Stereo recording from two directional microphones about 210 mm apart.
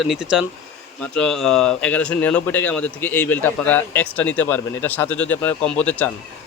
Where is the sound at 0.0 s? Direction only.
Centre (ahead or behind).